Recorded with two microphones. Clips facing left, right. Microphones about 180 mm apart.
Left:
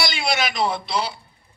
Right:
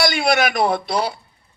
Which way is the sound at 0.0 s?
55° right (ahead or behind).